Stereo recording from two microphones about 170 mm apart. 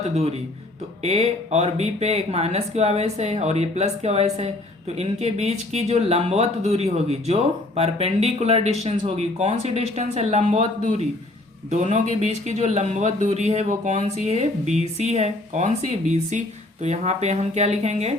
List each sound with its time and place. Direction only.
0.1 s speech: 40° right (ahead or behind)
11.7 s speech: 45° right (ahead or behind)